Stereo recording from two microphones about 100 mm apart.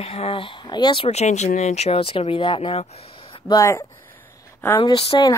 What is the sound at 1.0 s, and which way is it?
Speech, 90° left.